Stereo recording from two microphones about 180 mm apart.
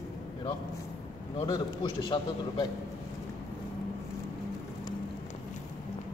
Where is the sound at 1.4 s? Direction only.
25° left (ahead or behind).